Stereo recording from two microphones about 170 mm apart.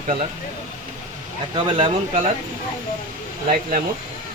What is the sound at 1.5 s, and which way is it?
Speech, 30° right (ahead or behind).